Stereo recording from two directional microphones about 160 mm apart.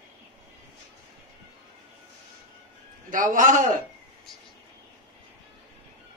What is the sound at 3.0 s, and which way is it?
Speech, 55° right (ahead or behind).